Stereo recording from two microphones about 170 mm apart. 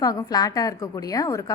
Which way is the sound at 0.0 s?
20° left (ahead or behind).